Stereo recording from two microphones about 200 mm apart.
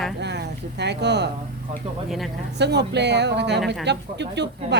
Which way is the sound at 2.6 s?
55° right (ahead or behind).